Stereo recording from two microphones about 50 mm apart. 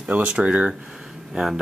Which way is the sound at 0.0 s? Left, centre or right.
Right.